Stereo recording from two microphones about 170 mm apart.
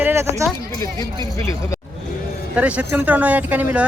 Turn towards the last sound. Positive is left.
turn(degrees=-10)  # may be behind; listen again after turning